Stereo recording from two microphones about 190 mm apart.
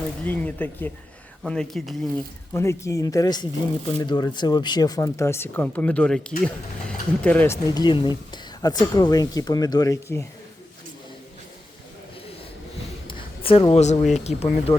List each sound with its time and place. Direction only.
0.3 s speech: 10° left (ahead or behind)
2.5 s speech: 15° left (ahead or behind)
13.1 s speech: 30° left (ahead or behind)